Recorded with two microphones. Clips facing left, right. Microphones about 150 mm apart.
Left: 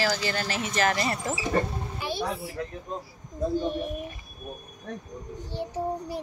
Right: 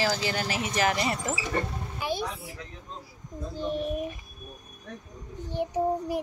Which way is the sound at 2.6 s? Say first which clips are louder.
Left 10 dB; 50° left (ahead or behind).